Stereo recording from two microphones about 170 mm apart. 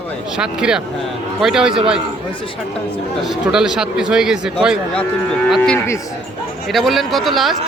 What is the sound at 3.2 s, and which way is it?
A man's voice, 5° right (ahead or behind).